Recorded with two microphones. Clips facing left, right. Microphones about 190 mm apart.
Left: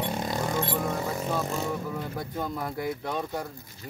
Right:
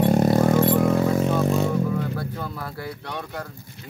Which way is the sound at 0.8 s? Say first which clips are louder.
Right 10 dB; 75° right (ahead or behind).